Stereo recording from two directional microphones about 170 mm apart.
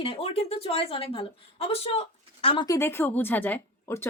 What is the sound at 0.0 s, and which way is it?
Speech, 35° left (ahead or behind).